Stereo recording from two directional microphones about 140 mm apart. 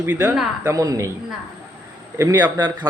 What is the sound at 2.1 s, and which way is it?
Speech, 30° right (ahead or behind).